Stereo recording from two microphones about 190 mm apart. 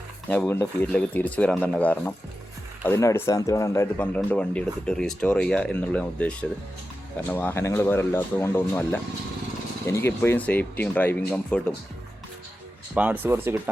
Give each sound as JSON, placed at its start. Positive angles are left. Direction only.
{"t": 0.3, "sound": "speech", "side_deg": 10}
{"t": 12.9, "sound": "speech", "side_deg": -10}